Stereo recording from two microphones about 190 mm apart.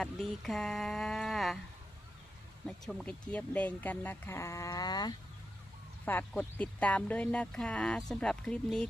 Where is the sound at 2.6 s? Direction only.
Centre (ahead or behind); by 5.1 s 20° left (ahead or behind).